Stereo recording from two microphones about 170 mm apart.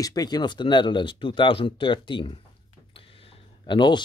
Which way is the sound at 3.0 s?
35° left (ahead or behind).